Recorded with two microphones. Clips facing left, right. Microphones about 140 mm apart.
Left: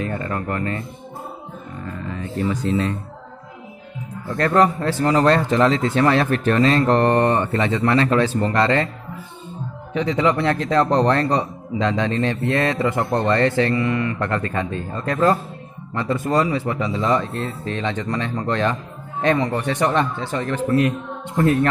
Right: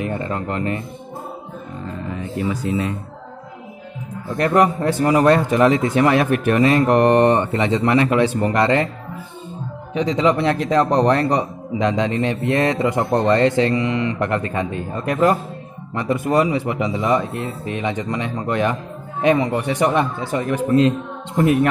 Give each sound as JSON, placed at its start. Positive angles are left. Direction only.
{"t": 0.0, "sound": "a man's voice", "side_deg": -20}
{"t": 2.1, "sound": "speech", "side_deg": -15}
{"t": 4.3, "sound": "a man's voice", "side_deg": -15}
{"t": 9.9, "sound": "a man's voice", "side_deg": -20}